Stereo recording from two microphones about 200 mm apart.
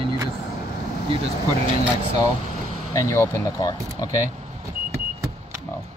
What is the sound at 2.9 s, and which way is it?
Speech, 15° left (ahead or behind).